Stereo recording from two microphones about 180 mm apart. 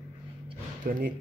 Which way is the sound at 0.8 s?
50° right (ahead or behind).